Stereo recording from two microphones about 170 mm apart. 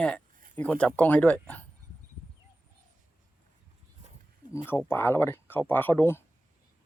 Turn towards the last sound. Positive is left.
turn(degrees=15)  # may be behind; listen again after turning